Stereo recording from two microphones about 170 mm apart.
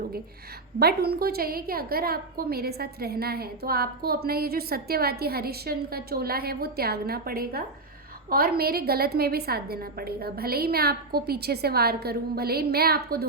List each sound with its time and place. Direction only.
0.8 s a woman's voice: 65° right (ahead or behind)